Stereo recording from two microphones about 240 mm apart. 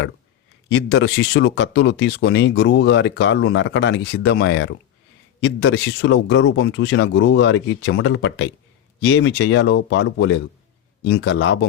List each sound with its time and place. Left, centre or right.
0.7 s speech: left